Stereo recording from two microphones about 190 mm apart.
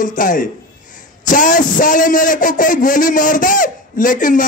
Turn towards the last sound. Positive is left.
turn(degrees=45)  # may be behind; listen again after turning